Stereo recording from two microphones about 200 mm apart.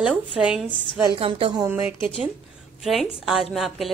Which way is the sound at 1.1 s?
25° right (ahead or behind).